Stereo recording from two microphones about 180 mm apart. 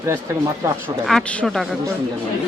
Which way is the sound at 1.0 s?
5° left (ahead or behind).